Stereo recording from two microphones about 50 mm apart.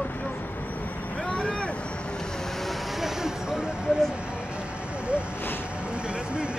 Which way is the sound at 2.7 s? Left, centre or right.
Centre.